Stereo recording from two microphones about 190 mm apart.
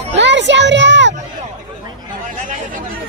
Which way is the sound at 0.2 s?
70° right (ahead or behind).